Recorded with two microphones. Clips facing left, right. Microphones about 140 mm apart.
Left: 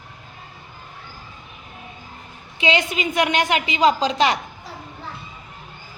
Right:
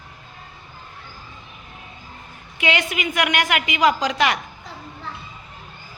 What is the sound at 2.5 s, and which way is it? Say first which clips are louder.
A woman's voice: left 2 dB; 25° left (ahead or behind).